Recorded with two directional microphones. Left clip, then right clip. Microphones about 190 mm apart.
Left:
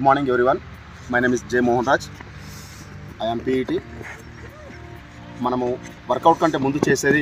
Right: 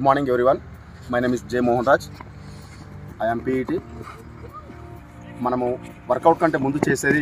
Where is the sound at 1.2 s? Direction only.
40° right (ahead or behind).